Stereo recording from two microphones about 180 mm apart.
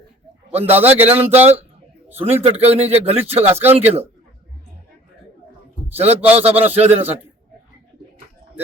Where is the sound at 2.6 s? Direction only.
35° right (ahead or behind).